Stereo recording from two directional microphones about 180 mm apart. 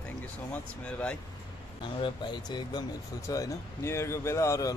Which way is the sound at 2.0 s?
25° left (ahead or behind).